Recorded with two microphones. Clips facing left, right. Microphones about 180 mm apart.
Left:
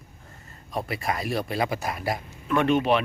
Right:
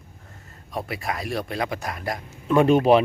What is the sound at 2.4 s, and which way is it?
Speech, 30° right (ahead or behind).